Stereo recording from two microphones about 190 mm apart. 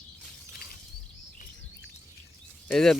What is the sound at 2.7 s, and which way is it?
Speech, 5° left (ahead or behind).